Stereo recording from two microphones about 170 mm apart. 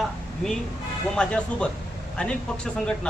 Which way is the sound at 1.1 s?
5° left (ahead or behind).